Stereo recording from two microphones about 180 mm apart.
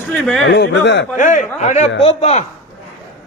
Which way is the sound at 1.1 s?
45° left (ahead or behind).